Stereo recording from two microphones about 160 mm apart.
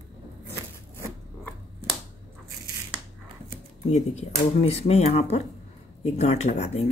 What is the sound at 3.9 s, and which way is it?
Speech, 45° left (ahead or behind).